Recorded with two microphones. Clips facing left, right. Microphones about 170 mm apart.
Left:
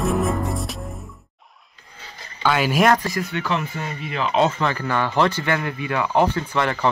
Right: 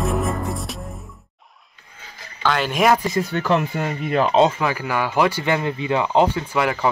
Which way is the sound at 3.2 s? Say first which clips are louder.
Right 3 dB; 40° right (ahead or behind).